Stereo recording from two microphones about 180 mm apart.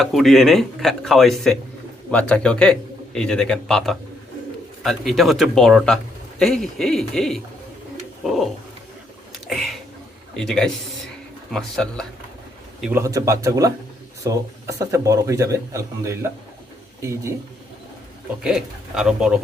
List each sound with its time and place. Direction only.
0.0 s speech: centre (ahead or behind)
9.5 s speech: centre (ahead or behind)
12.8 s speech: 15° right (ahead or behind)
18.4 s speech: 5° right (ahead or behind)